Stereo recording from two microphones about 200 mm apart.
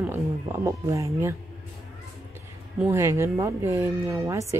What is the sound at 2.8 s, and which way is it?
Speech, 15° right (ahead or behind).